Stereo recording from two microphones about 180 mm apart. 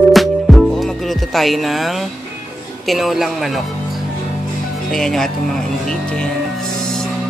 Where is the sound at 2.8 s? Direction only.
Centre (ahead or behind).